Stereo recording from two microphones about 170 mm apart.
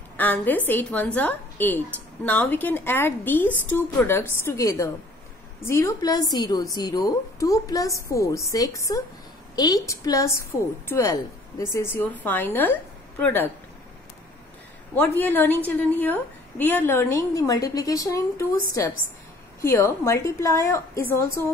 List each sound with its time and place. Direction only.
0.2 s a woman's voice: 10° left (ahead or behind)
15.0 s a woman's voice: 10° left (ahead or behind)